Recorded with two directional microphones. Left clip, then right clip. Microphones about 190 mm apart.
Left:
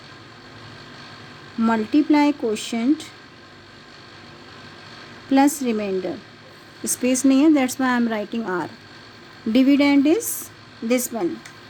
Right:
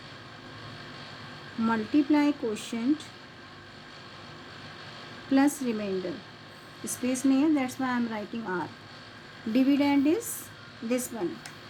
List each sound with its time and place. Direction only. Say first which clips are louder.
1.6 s speech: left 7 dB; 45° left (ahead or behind)
5.3 s speech: left 7 dB; 45° left (ahead or behind)